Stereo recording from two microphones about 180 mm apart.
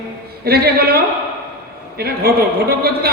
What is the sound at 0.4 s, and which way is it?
A man's voice, 60° right (ahead or behind).